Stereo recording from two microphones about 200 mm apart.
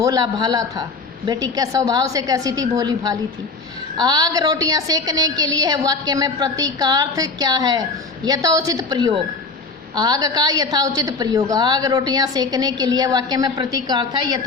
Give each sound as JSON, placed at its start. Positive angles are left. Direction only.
{"t": 0.0, "sound": "a woman's voice", "side_deg": -20}